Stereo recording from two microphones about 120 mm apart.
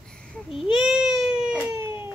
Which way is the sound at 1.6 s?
20° right (ahead or behind).